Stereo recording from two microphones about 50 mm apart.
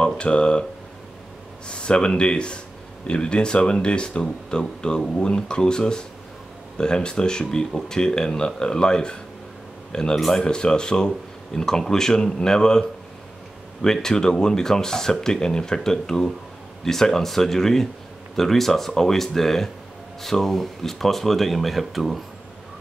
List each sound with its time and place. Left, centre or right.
0.0 s speech: centre
1.7 s speech: centre
13.8 s speech: centre